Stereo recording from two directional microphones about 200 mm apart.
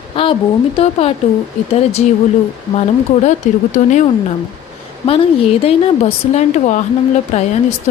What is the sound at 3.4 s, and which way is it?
A woman's voice, 40° left (ahead or behind).